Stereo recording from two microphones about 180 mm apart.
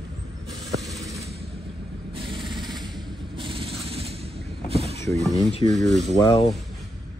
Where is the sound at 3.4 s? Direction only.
30° right (ahead or behind).